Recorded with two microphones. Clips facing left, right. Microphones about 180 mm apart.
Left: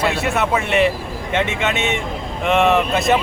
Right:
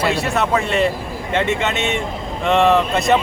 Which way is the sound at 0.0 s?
Centre (ahead or behind).